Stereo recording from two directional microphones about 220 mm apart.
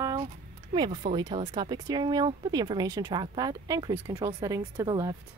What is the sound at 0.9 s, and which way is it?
Speech, 30° right (ahead or behind).